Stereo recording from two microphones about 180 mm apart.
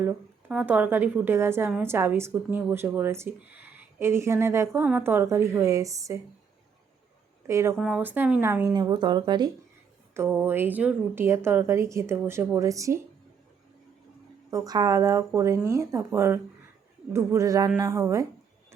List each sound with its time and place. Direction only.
0.0 s a woman's voice: 10° right (ahead or behind)
7.4 s a woman's voice: 15° right (ahead or behind)
10.2 s a woman's voice: 10° right (ahead or behind)
14.5 s a woman's voice: 20° right (ahead or behind)